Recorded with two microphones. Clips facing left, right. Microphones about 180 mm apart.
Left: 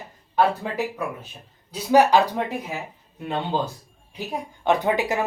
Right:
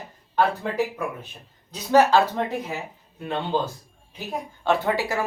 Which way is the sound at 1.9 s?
15° left (ahead or behind).